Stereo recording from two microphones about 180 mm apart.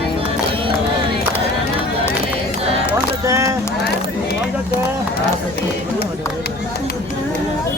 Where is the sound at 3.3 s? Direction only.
15° right (ahead or behind).